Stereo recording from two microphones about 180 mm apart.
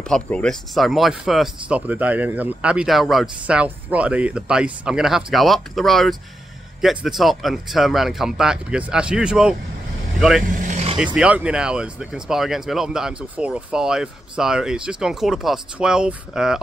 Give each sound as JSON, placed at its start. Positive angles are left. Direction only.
{"t": 0.0, "sound": "speech", "side_deg": 5}
{"t": 10.4, "sound": "vehicle", "side_deg": -45}
{"t": 11.1, "sound": "speech", "side_deg": -5}